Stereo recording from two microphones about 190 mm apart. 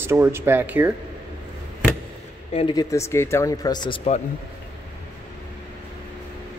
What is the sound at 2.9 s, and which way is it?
Speech, 15° left (ahead or behind).